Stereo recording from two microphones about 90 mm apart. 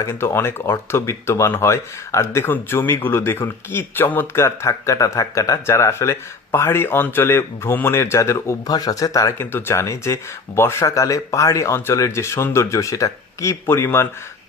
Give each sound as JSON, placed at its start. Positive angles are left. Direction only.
{"t": 0.0, "sound": "speech", "side_deg": 30}
{"t": 8.6, "sound": "speech", "side_deg": 45}
{"t": 9.5, "sound": "speech", "side_deg": 25}